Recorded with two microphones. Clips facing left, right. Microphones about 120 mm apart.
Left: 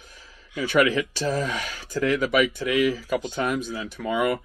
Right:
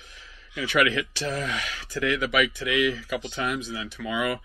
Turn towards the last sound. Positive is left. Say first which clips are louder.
# left 4 dB
turn(degrees=45)  # may be behind; listen again after turning